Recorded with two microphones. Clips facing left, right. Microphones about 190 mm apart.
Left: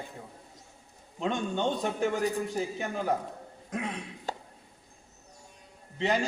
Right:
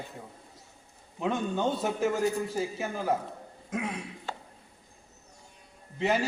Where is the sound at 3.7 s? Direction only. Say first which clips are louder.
Right 1 dB; 10° right (ahead or behind).